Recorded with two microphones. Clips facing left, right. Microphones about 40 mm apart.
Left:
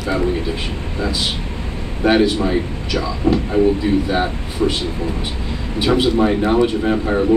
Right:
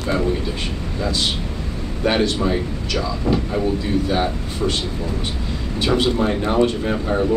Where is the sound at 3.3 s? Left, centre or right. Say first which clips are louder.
Left 4 dB; left.